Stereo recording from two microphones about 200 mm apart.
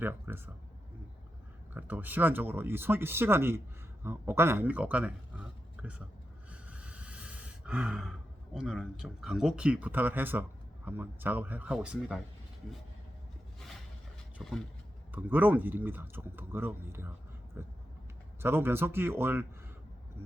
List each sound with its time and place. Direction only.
0.0 s speech: 10° right (ahead or behind)
1.7 s speech: 10° right (ahead or behind)
6.5 s gasp: 5° right (ahead or behind)
8.5 s speech: centre (ahead or behind)
14.4 s speech: centre (ahead or behind)
18.4 s speech: 10° right (ahead or behind)